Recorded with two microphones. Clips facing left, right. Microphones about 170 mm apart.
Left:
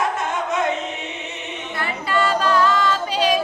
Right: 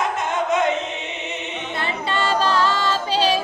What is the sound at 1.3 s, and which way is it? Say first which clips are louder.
A capella: right 2 dB; 25° right (ahead or behind).